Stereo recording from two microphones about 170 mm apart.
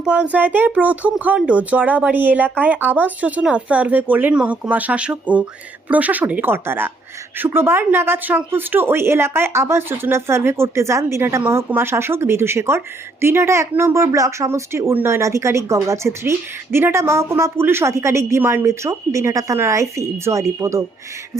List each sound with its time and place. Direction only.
0.0 s speech: 5° right (ahead or behind)